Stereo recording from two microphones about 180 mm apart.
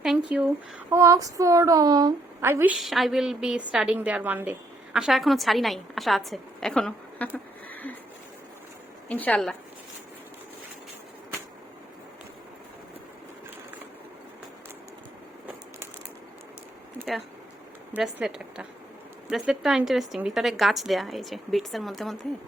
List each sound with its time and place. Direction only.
0.3 s speech: 10° right (ahead or behind)
2.8 s a woman's voice: centre (ahead or behind)
7.7 s a sound: 10° left (ahead or behind)
9.0 s a woman's voice: 5° left (ahead or behind)
17.9 s a woman's voice: 5° right (ahead or behind)